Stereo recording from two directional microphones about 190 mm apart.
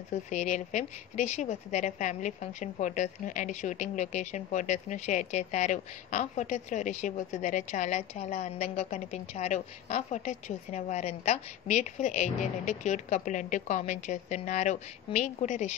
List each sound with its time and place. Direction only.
0.1 s a woman's voice: 40° left (ahead or behind)